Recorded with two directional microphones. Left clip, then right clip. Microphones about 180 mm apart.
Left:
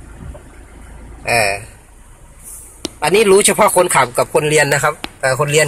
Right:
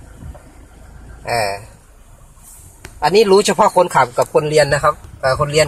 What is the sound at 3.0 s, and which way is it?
Speech, centre (ahead or behind).